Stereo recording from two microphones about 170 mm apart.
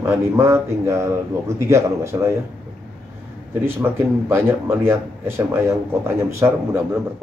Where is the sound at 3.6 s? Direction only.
15° right (ahead or behind).